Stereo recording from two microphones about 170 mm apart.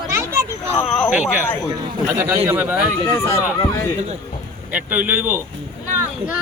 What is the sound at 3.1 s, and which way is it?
Speech, 15° left (ahead or behind).